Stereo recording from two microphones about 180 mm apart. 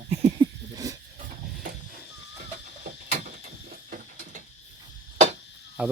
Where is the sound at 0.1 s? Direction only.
30° right (ahead or behind).